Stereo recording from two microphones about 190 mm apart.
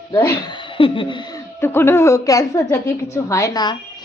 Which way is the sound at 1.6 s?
10° left (ahead or behind).